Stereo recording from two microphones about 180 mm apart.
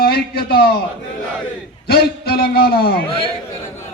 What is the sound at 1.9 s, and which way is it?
A man's voice, 60° left (ahead or behind).